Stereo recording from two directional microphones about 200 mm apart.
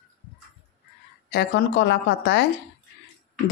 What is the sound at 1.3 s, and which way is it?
Speech, 60° left (ahead or behind).